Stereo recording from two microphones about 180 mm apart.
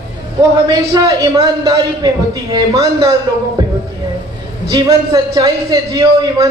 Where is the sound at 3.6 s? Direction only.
20° right (ahead or behind).